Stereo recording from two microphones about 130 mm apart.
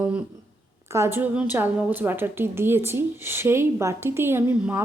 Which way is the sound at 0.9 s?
20° right (ahead or behind).